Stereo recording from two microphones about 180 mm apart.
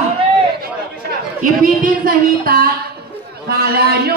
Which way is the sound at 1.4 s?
50° right (ahead or behind).